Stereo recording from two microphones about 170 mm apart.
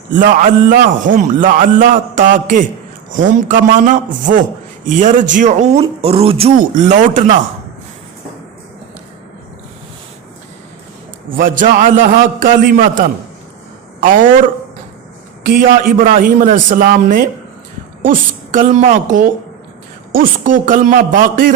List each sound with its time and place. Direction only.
0.1 s a man's voice: 50° right (ahead or behind); by 6.5 s 35° right (ahead or behind)
6.6 s a man's voice: 45° right (ahead or behind)
11.3 s a man's voice: 50° right (ahead or behind)
16.0 s a man's voice: 50° right (ahead or behind)